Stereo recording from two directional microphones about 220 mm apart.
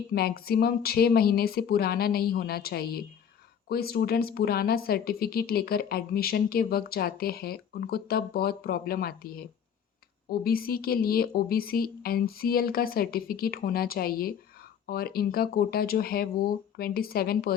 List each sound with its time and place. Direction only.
0.1 s speech: 45° left (ahead or behind)